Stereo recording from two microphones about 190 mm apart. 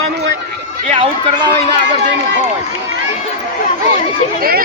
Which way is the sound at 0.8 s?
30° right (ahead or behind).